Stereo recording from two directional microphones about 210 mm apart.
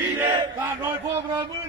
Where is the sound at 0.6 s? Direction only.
10° right (ahead or behind).